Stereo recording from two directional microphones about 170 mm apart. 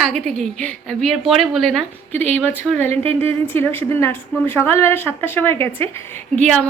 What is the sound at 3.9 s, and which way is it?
A woman's voice, 15° left (ahead or behind).